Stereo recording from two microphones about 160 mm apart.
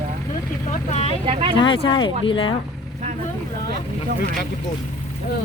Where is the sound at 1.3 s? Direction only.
35° right (ahead or behind).